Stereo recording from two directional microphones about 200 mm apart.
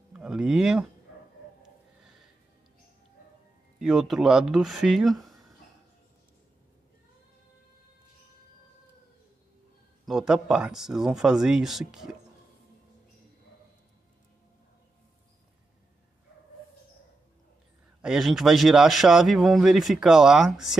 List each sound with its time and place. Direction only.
0.1 s speech: 5° right (ahead or behind)
3.8 s a man's voice: centre (ahead or behind)
10.0 s a man's voice: centre (ahead or behind)
18.0 s a man's voice: centre (ahead or behind)